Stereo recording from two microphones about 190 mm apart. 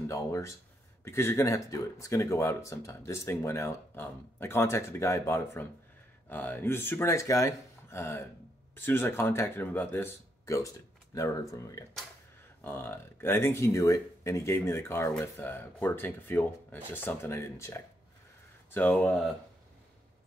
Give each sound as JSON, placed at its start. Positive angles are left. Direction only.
{"t": 0.1, "sound": "speech", "side_deg": 15}
{"t": 12.6, "sound": "speech", "side_deg": 10}